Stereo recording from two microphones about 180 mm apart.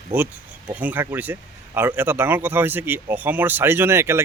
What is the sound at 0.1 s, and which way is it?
Speech, 15° right (ahead or behind).